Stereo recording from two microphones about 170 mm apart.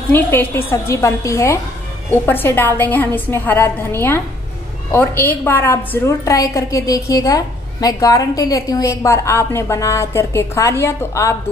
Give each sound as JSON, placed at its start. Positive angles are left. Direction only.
{"t": 0.1, "sound": "a woman's voice", "side_deg": 10}